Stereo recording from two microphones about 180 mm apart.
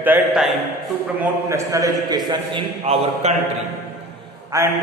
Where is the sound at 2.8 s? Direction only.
35° right (ahead or behind).